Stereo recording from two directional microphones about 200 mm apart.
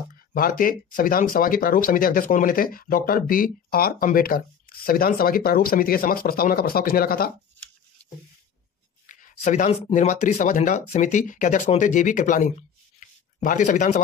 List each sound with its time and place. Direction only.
0.3 s speech: 45° left (ahead or behind)
9.0 s speech: 40° left (ahead or behind)